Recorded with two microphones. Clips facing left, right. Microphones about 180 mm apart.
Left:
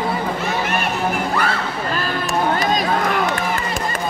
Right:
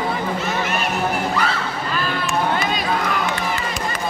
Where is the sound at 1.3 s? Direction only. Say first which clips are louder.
Left 1 dB; 50° left (ahead or behind).